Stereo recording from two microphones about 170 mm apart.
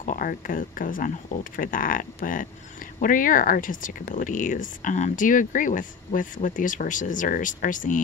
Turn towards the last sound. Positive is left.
turn(degrees=50)  # may be behind; listen again after turning